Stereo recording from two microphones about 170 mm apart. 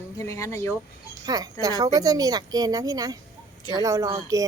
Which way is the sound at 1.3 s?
25° right (ahead or behind).